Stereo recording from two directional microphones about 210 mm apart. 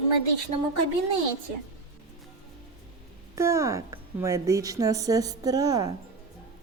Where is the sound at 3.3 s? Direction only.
15° right (ahead or behind).